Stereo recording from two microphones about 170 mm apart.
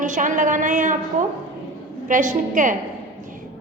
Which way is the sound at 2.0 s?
50° right (ahead or behind).